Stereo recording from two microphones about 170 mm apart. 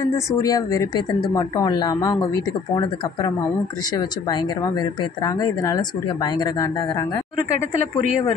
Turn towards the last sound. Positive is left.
turn(degrees=25)  # may be behind; listen again after turning